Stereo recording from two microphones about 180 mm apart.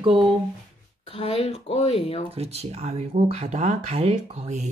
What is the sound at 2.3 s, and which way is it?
Speech, 35° right (ahead or behind).